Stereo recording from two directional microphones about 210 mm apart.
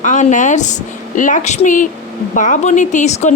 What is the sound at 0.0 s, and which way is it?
Speech, 35° left (ahead or behind).